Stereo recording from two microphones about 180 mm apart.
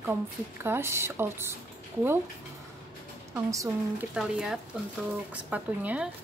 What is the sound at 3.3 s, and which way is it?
Speech, 20° right (ahead or behind).